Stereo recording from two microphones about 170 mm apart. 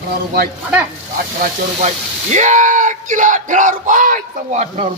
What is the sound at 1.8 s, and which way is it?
A man's voice, 45° right (ahead or behind).